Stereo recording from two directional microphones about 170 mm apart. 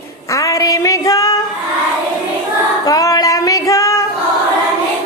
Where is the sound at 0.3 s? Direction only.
20° left (ahead or behind).